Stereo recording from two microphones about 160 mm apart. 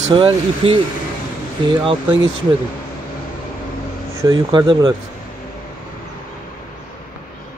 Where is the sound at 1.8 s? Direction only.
30° right (ahead or behind).